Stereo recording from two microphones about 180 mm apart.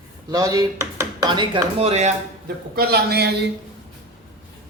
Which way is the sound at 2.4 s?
55° right (ahead or behind).